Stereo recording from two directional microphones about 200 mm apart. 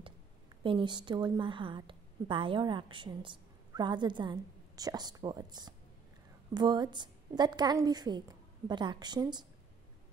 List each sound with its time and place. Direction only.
0.7 s a woman's voice: 25° right (ahead or behind)